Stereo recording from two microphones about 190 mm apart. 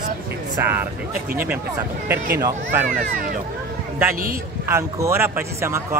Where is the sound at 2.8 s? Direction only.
45° right (ahead or behind).